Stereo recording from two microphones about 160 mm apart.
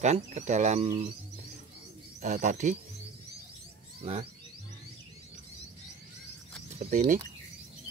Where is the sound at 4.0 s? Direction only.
35° right (ahead or behind).